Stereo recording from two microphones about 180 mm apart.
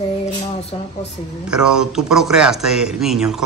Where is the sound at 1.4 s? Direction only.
5° right (ahead or behind).